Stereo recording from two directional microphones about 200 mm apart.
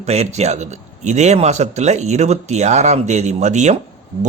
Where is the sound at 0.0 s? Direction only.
30° right (ahead or behind).